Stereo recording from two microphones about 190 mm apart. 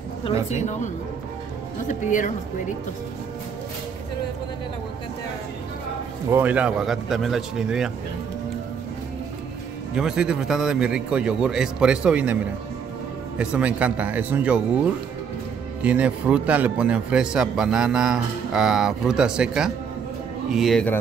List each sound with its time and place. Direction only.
0.2 s speech: 35° left (ahead or behind)
1.9 s speech: 40° left (ahead or behind)
6.3 s a man's voice: 10° right (ahead or behind)
9.9 s a man's voice: 5° right (ahead or behind)
13.4 s speech: 5° right (ahead or behind)
15.8 s a man's voice: 5° right (ahead or behind)